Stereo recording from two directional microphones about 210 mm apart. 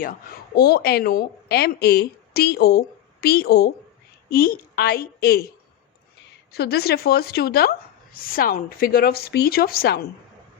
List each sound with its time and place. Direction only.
0.0 s a woman's voice: 45° left (ahead or behind)
6.5 s speech: 50° left (ahead or behind)